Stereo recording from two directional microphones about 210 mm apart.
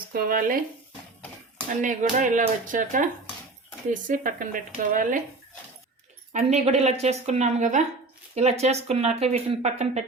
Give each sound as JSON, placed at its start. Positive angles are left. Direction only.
{"t": 0.1, "sound": "speech", "side_deg": -45}
{"t": 1.8, "sound": "speech", "side_deg": -40}
{"t": 6.3, "sound": "speech", "side_deg": -30}